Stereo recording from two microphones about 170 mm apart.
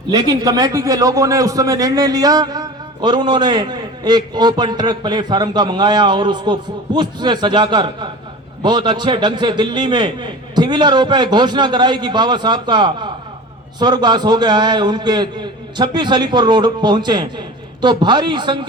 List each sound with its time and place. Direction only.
0.1 s a man's voice: 20° right (ahead or behind)